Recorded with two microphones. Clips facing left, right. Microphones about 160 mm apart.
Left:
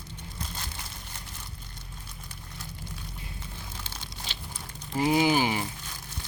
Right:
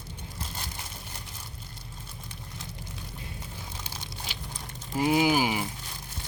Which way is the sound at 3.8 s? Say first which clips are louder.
Right 1 dB; 15° right (ahead or behind).